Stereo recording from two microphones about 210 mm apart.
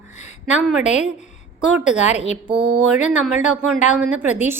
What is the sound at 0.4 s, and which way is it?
Speech, 5° right (ahead or behind).